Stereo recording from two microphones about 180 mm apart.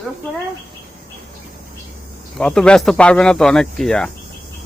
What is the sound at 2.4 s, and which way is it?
Speech, 5° left (ahead or behind).